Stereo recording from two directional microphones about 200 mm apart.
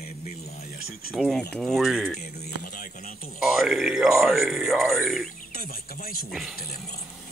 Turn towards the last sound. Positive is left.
turn(degrees=0)  # may be behind; listen again after turning